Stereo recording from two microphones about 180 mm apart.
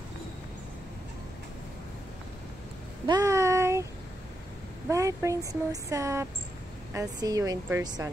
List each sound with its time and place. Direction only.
3.1 s child singing: 20° right (ahead or behind)
4.8 s a woman's voice: 15° right (ahead or behind)